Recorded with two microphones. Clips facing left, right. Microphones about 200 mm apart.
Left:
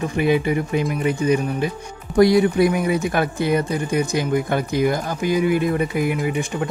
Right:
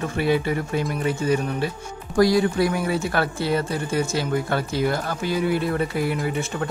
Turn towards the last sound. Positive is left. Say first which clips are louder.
# left 3 dB
turn(degrees=15)  # may be behind; listen again after turning